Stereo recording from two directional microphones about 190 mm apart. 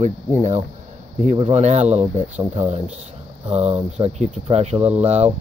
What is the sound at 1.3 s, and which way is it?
Speech, 30° right (ahead or behind).